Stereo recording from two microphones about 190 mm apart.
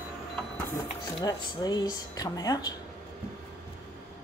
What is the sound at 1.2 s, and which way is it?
Speech, 20° left (ahead or behind).